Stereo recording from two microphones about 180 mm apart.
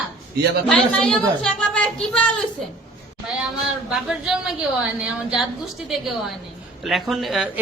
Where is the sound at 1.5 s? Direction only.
5° left (ahead or behind).